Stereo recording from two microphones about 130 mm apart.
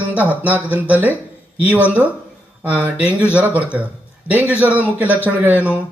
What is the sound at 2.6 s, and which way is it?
A man's voice, 10° right (ahead or behind).